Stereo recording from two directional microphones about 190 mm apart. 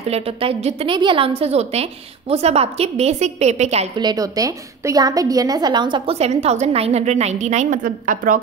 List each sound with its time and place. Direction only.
0.1 s a woman's voice: 30° right (ahead or behind)
4.0 s a woman's voice: 20° right (ahead or behind); by 8.4 s 45° right (ahead or behind)